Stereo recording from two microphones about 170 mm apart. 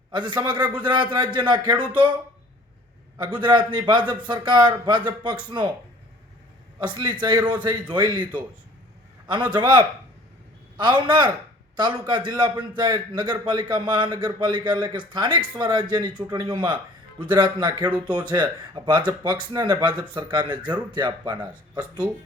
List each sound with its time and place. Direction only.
0.1 s a man's voice: 25° right (ahead or behind)
3.2 s a man's voice: 25° right (ahead or behind)
6.8 s a man's voice: 25° right (ahead or behind)